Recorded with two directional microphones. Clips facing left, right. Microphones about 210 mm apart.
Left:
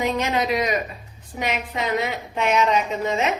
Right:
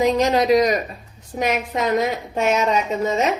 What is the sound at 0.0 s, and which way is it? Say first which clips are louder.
A woman's voice: right 6 dB; 35° right (ahead or behind).